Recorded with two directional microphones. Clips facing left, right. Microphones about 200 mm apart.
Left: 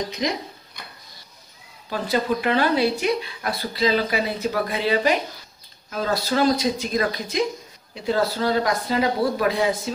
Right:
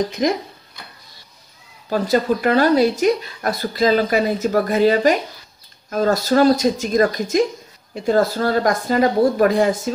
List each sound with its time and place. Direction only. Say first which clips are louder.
0.1 s speech: right 6 dB; 50° right (ahead or behind)
1.9 s speech: right 5 dB; 45° right (ahead or behind)